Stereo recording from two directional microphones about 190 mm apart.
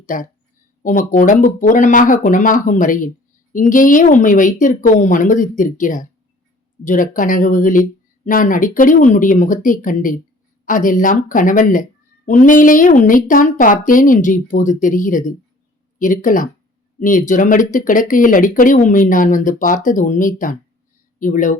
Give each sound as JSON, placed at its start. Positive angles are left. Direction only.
{"t": 0.0, "sound": "a woman's voice", "side_deg": 45}